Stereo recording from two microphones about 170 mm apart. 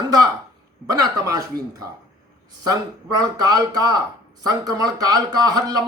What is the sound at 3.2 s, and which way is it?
Speech, 20° right (ahead or behind).